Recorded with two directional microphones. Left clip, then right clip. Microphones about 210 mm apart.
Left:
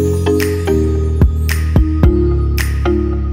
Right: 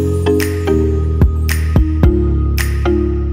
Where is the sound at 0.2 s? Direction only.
Centre (ahead or behind).